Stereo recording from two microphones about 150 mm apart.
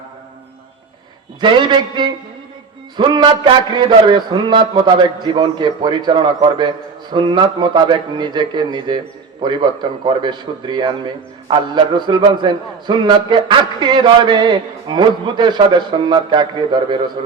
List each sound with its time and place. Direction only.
1.4 s a man's voice: 30° right (ahead or behind)